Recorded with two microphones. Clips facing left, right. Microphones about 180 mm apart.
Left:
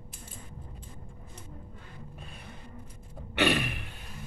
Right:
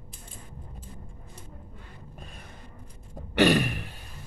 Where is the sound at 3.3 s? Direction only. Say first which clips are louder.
Right 6 dB; 40° right (ahead or behind).